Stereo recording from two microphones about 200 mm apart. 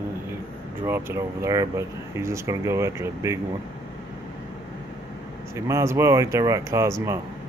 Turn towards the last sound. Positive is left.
turn(degrees=-15)  # may be behind; listen again after turning